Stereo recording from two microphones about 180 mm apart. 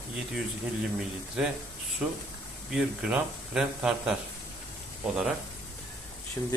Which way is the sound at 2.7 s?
5° right (ahead or behind).